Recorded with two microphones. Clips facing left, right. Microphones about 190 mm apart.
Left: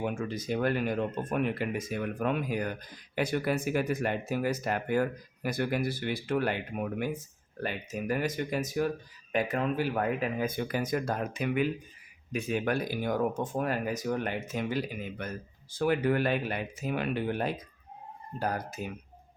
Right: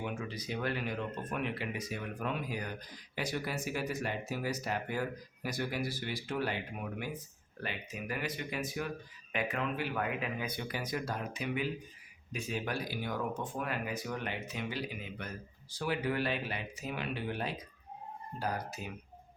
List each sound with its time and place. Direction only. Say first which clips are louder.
0.0 s speech: left 6 dB; 50° left (ahead or behind)